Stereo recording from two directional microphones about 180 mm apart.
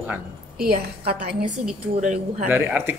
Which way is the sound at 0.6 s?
55° right (ahead or behind).